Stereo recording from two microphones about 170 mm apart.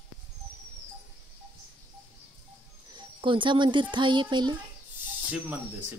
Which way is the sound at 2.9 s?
30° right (ahead or behind).